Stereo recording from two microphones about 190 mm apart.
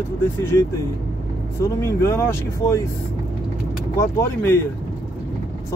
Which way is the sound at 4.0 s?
15° left (ahead or behind).